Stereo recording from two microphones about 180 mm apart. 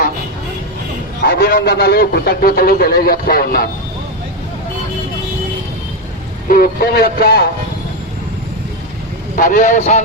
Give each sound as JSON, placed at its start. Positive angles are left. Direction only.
{"t": 1.3, "sound": "a man's voice", "side_deg": 55}
{"t": 6.5, "sound": "a man's voice", "side_deg": 55}
{"t": 9.3, "sound": "speech", "side_deg": 45}